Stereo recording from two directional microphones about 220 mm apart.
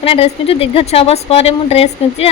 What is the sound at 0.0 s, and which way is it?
A woman's voice, 25° left (ahead or behind).